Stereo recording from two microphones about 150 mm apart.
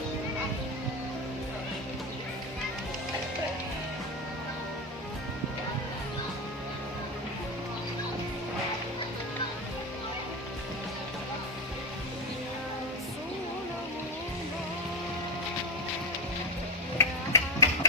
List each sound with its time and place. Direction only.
17.0 s music: 20° left (ahead or behind)